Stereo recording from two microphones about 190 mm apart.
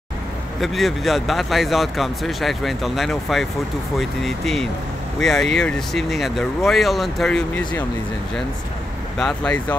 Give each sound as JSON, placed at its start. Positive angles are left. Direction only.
{"t": 0.6, "sound": "speech", "side_deg": 0}
{"t": 9.2, "sound": "speech", "side_deg": 5}